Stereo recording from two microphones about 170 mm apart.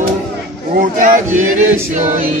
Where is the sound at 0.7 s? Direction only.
50° right (ahead or behind).